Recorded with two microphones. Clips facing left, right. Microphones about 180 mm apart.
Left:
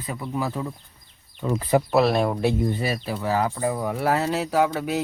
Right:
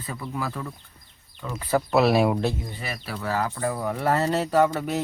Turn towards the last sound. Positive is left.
turn(degrees=5)  # may be behind; listen again after turning